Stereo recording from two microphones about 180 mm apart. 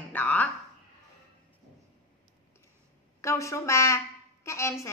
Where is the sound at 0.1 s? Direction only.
10° left (ahead or behind).